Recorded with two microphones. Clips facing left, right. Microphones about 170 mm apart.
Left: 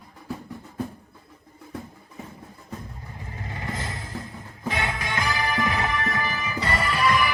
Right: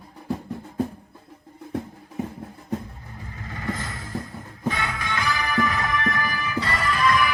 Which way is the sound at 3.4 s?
25° left (ahead or behind).